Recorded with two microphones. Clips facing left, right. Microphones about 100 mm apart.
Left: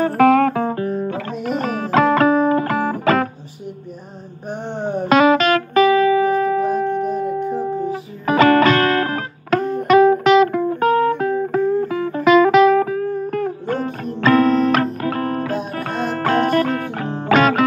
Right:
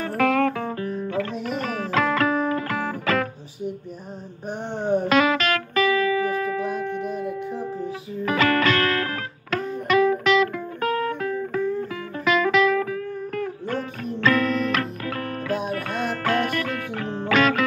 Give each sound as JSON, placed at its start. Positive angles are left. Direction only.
{"t": 0.0, "sound": "music", "side_deg": 35}
{"t": 5.1, "sound": "music", "side_deg": 25}
{"t": 8.3, "sound": "music", "side_deg": 30}
{"t": 9.8, "sound": "music", "side_deg": 30}
{"t": 12.3, "sound": "music", "side_deg": 25}